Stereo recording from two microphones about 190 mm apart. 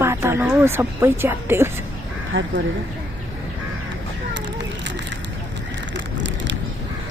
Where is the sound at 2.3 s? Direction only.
90° right.